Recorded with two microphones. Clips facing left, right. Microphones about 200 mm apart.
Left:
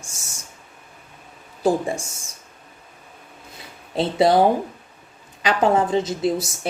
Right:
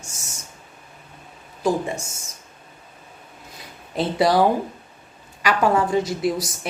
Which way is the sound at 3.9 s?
25° left (ahead or behind).